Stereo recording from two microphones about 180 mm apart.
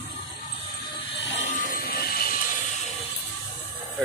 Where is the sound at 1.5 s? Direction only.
55° left (ahead or behind).